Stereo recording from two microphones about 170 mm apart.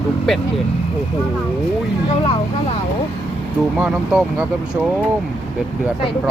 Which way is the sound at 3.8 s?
5° right (ahead or behind).